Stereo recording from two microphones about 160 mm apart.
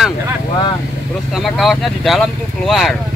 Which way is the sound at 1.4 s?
Centre (ahead or behind).